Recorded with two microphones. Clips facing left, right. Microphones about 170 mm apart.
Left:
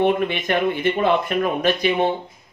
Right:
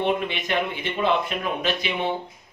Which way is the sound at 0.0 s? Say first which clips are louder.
Left 5 dB; 50° left (ahead or behind).